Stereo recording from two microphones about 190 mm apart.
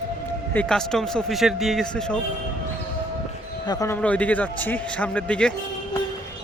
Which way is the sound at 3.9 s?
5° left (ahead or behind).